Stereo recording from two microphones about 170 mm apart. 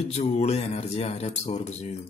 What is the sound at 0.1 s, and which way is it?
A man's voice, 40° left (ahead or behind).